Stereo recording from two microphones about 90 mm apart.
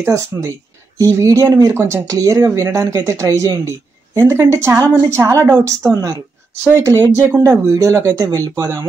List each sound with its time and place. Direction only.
0.0 s speech: 35° right (ahead or behind)
6.8 s speech: 35° right (ahead or behind)
7.2 s speech: 20° right (ahead or behind)
7.6 s speech: 35° right (ahead or behind)